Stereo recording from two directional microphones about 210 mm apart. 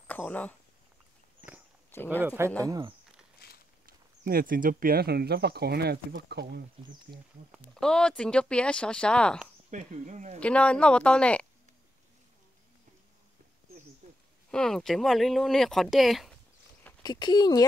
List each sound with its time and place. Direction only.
0.1 s speech: 5° left (ahead or behind)
1.9 s speech: 10° left (ahead or behind)
2.2 s speech: 10° right (ahead or behind)
3.3 s a sound: 50° left (ahead or behind)
3.8 s speech: 45° right (ahead or behind)
7.5 s speech: 5° left (ahead or behind)
9.7 s speech: 35° right (ahead or behind)
10.4 s speech: 5° left (ahead or behind)
14.5 s speech: 5° left (ahead or behind)
17.0 s speech: 20° left (ahead or behind)